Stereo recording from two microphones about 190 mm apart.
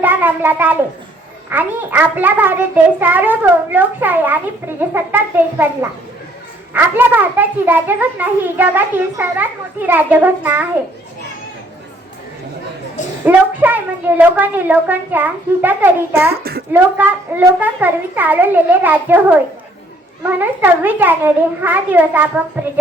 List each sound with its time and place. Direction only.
0.0 s a child's voice: 10° right (ahead or behind)
6.7 s a child's voice: 10° right (ahead or behind)
13.2 s a child's voice: 10° right (ahead or behind)
16.4 s speech: 55° right (ahead or behind)
16.7 s a child's voice: 10° right (ahead or behind)